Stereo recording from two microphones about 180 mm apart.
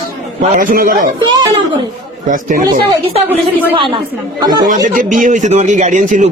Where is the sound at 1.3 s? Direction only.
25° right (ahead or behind).